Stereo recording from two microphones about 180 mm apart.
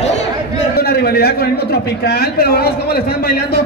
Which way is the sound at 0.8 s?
60° left (ahead or behind).